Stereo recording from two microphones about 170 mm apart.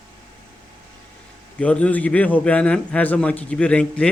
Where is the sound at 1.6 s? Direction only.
5° left (ahead or behind).